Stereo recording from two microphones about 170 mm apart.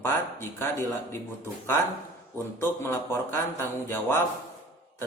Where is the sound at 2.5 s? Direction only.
15° left (ahead or behind).